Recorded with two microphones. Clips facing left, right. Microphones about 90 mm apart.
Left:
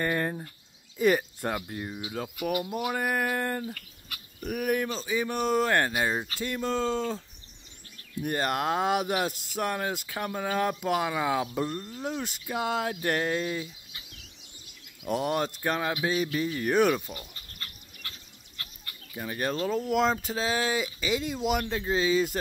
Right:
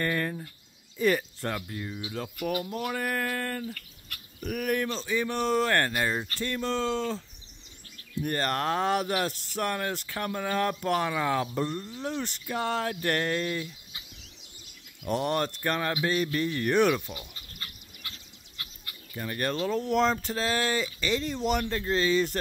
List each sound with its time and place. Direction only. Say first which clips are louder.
0.0 s speech: left 1 dB; 25° left (ahead or behind)
1.7 s speech: left 1 dB; 30° left (ahead or behind)
2.0 s speech: left 1 dB; 5° left (ahead or behind)
3.7 s speech: left 1 dB; 5° left (ahead or behind)
15.0 s speech: even; 5° left (ahead or behind)
19.1 s speech: even; 10° left (ahead or behind)